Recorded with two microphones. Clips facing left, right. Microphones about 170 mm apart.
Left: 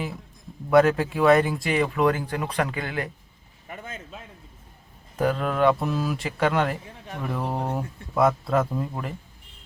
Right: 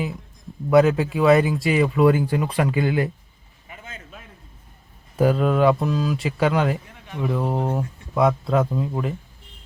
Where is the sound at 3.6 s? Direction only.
45° left (ahead or behind).